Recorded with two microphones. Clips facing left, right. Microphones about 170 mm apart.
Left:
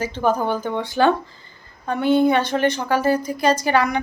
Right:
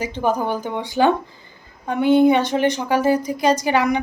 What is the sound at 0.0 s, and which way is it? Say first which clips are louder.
A woman's voice: left 1 dB; 15° right (ahead or behind).